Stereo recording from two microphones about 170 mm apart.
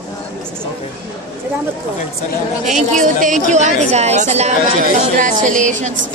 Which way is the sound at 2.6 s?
45° right (ahead or behind).